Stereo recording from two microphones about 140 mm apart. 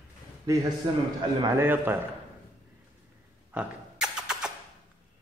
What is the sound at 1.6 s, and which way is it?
Speech, 15° right (ahead or behind).